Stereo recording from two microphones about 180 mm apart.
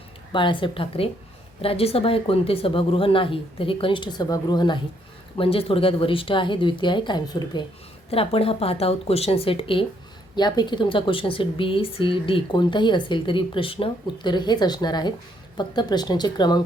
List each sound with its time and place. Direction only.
0.3 s a woman's voice: 25° left (ahead or behind)